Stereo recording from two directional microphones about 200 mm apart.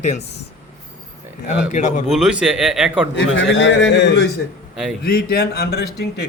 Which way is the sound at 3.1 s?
65° left (ahead or behind).